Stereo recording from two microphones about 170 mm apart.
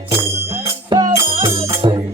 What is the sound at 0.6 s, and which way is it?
Music, 25° right (ahead or behind).